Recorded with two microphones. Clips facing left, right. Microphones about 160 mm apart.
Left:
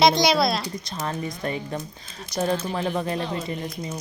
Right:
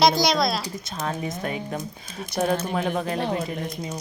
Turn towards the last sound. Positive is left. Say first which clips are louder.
# even
turn(degrees=-5)  # may be behind; listen again after turning